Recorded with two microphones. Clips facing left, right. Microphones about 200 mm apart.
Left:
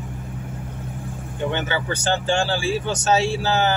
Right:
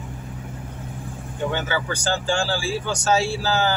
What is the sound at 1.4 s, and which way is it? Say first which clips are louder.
Speech: left 1 dB; 20° left (ahead or behind).